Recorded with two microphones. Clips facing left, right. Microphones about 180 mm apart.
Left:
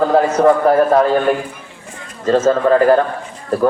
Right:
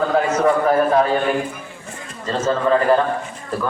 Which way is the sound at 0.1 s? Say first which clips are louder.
Left 6 dB; 40° left (ahead or behind).